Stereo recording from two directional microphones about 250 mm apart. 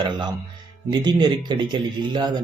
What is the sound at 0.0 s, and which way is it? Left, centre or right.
A man's voice, centre.